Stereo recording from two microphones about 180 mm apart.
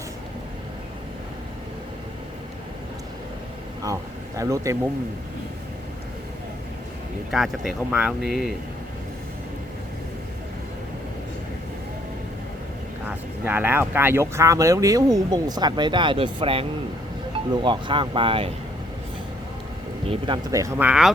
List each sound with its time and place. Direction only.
4.4 s speech: 15° right (ahead or behind)
7.3 s speech: centre (ahead or behind)
13.1 s speech: 10° right (ahead or behind); by 18.5 s 30° right (ahead or behind)
20.1 s speech: 25° right (ahead or behind); by 21.1 s 5° right (ahead or behind)